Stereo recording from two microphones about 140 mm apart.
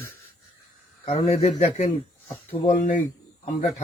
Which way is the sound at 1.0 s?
50° left (ahead or behind).